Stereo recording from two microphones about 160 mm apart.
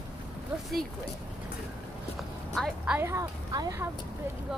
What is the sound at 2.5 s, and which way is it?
Speech, centre (ahead or behind).